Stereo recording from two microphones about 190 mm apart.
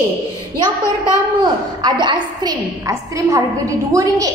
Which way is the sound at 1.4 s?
25° right (ahead or behind).